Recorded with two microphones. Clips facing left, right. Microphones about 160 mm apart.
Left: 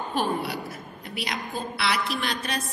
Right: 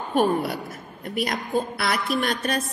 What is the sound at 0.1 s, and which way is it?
A woman's voice, 50° right (ahead or behind).